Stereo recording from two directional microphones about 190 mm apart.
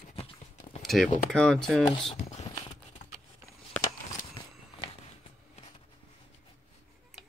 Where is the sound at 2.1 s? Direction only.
35° left (ahead or behind).